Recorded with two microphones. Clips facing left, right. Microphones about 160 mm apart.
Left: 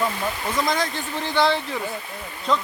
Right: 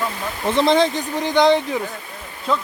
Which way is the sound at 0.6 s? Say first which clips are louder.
Right 10 dB; 25° right (ahead or behind).